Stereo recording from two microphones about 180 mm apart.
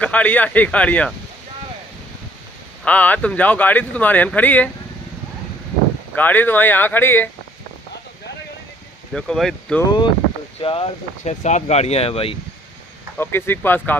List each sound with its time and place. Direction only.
0.0 s speech: 5° left (ahead or behind)
2.8 s speech: 10° left (ahead or behind)
6.1 s speech: 10° left (ahead or behind)
9.1 s speech: centre (ahead or behind)
10.6 s speech: 30° left (ahead or behind)
13.2 s speech: 10° left (ahead or behind)